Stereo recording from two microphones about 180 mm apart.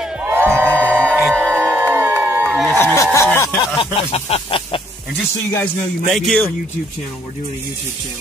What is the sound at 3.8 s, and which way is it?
Speech, 30° left (ahead or behind).